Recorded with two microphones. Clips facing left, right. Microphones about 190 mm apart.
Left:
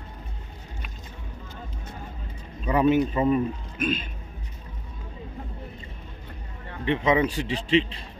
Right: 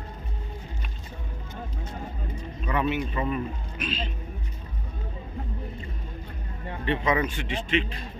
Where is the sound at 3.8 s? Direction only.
50° left (ahead or behind).